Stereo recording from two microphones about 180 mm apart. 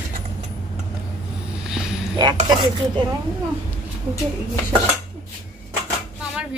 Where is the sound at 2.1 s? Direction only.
25° right (ahead or behind).